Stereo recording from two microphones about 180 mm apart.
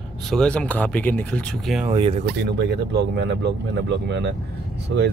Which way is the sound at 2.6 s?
70° right (ahead or behind).